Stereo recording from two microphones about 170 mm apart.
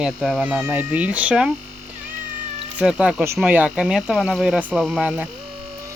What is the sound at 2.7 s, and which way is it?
Speech, 5° right (ahead or behind).